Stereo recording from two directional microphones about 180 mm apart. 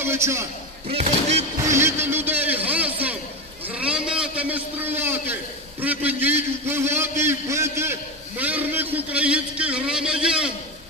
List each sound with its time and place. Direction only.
0.0 s a man's voice: 15° right (ahead or behind)
0.8 s speech: 35° right (ahead or behind)
1.6 s a sound: 15° right (ahead or behind)
3.6 s a man's voice: 5° right (ahead or behind)